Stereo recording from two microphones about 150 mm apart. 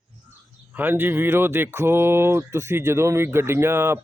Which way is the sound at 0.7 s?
10° right (ahead or behind).